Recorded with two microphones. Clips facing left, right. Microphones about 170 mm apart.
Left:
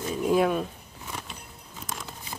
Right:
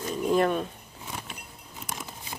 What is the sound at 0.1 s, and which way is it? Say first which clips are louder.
Speech: left 1 dB; 5° left (ahead or behind).